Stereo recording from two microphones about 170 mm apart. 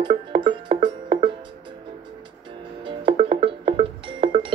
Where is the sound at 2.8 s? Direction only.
30° right (ahead or behind).